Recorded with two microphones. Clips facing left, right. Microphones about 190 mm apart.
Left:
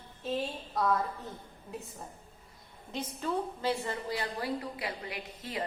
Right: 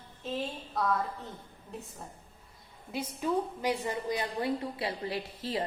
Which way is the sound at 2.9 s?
10° right (ahead or behind).